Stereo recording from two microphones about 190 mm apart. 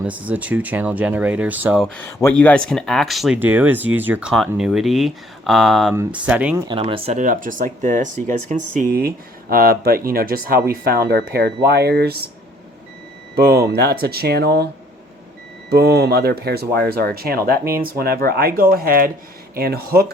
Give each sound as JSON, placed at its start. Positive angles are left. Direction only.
{"t": 0.0, "sound": "speech", "side_deg": -10}
{"t": 2.0, "sound": "speech", "side_deg": 15}
{"t": 5.9, "sound": "speech", "side_deg": -10}
{"t": 6.7, "sound": "speech", "side_deg": -30}
{"t": 13.3, "sound": "speech", "side_deg": -55}
{"t": 15.7, "sound": "speech", "side_deg": -55}